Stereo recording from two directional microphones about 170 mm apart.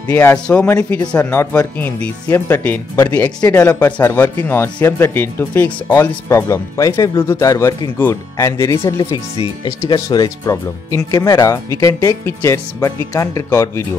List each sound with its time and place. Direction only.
0.1 s speech: 10° left (ahead or behind)